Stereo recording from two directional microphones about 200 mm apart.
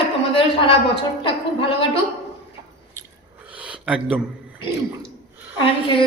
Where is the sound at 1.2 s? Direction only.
25° left (ahead or behind).